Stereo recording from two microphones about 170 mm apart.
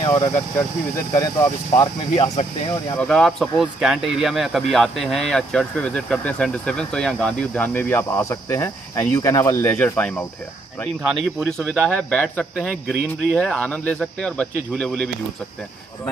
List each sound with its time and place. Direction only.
0.0 s speech: 25° left (ahead or behind)
2.1 s speech: 40° left (ahead or behind)
3.0 s speech: 5° left (ahead or behind)
11.1 s speech: centre (ahead or behind)